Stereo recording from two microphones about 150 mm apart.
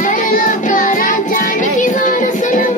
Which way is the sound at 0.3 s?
60° left (ahead or behind).